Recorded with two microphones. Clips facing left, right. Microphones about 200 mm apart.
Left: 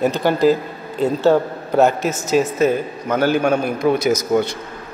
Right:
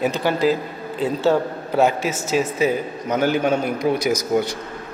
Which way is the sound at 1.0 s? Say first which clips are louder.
Left 4 dB; 45° left (ahead or behind).